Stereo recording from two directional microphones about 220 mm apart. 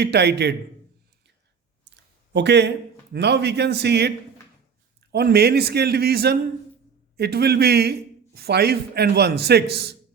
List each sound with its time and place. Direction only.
0.0 s a man's voice: 50° right (ahead or behind)
2.3 s a man's voice: 50° right (ahead or behind)
5.1 s a man's voice: 45° right (ahead or behind)